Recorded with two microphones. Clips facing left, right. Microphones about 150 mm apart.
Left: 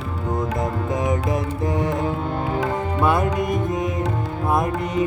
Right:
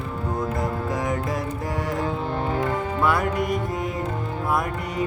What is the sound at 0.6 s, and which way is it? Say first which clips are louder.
Music: left 2 dB; 20° left (ahead or behind).